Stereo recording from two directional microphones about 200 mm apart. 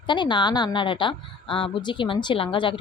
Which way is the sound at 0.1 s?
25° left (ahead or behind).